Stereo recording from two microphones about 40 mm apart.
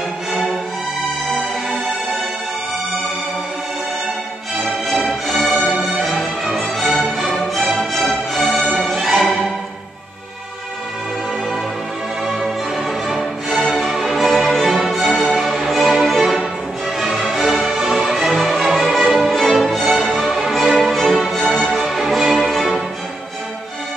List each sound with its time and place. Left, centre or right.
0.3 s music: centre
4.6 s music: centre
13.2 s music: centre
18.3 s music: centre